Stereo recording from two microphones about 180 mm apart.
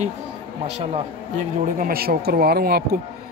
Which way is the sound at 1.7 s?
50° right (ahead or behind).